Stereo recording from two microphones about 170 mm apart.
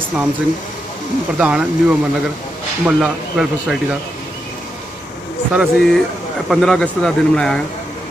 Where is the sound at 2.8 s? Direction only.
5° right (ahead or behind).